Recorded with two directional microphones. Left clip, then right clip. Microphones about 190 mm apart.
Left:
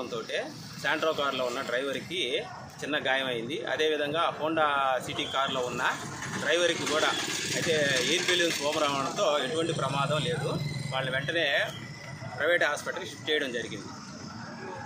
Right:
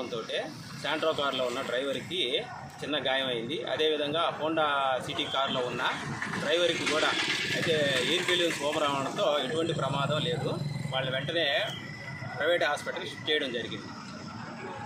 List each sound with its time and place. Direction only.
0.1 s speech: centre (ahead or behind)
6.7 s speech: 30° left (ahead or behind)
7.2 s speech: 50° left (ahead or behind)
7.7 s a man's voice: 5° left (ahead or behind)